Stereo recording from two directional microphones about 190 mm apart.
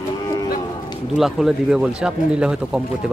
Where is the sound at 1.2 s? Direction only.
Centre (ahead or behind).